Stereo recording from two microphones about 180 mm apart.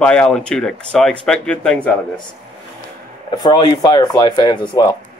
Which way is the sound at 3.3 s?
25° left (ahead or behind).